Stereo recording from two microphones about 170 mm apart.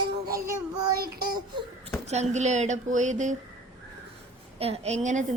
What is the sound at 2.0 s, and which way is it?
A woman's voice, 40° right (ahead or behind).